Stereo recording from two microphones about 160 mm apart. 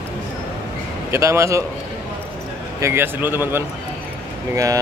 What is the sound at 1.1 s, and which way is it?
Speech, 15° right (ahead or behind).